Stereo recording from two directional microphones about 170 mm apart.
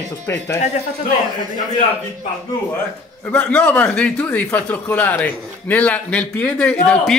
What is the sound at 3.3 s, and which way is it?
A man's voice, 10° left (ahead or behind).